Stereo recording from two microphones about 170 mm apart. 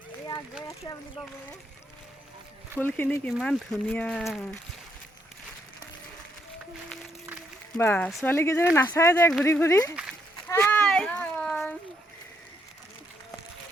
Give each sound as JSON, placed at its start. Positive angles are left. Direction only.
{"t": 0.9, "sound": "speech", "side_deg": 25}
{"t": 2.7, "sound": "speech", "side_deg": 10}
{"t": 3.4, "sound": "speech", "side_deg": 0}
{"t": 7.8, "sound": "speech", "side_deg": 10}
{"t": 9.9, "sound": "a sound", "side_deg": -5}
{"t": 10.5, "sound": "a sound", "side_deg": 10}